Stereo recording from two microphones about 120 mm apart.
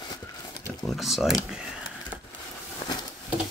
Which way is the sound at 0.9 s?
Centre (ahead or behind).